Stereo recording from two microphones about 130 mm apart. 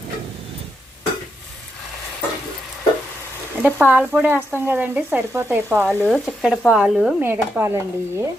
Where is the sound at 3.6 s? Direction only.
15° right (ahead or behind).